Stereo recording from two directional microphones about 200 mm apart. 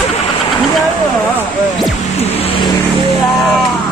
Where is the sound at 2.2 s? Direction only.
30° left (ahead or behind).